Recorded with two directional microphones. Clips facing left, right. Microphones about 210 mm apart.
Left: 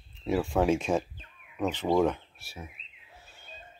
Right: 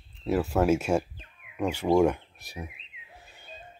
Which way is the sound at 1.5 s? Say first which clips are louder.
Right 3 dB; 10° right (ahead or behind).